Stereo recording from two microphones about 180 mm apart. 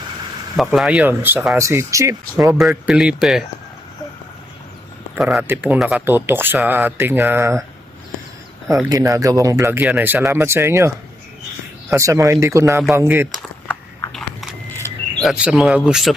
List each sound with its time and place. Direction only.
0.5 s speech: centre (ahead or behind); by 2.1 s 15° right (ahead or behind)
2.6 s speech: 5° right (ahead or behind)
5.1 s speech: 5° right (ahead or behind)
8.7 s speech: 20° right (ahead or behind)
14.1 s biting: centre (ahead or behind)
15.2 s speech: 5° right (ahead or behind)